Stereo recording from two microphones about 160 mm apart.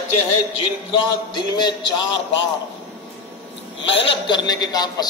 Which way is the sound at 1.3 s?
25° left (ahead or behind).